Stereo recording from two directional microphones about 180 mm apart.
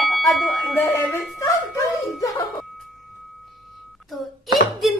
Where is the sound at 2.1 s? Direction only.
20° left (ahead or behind).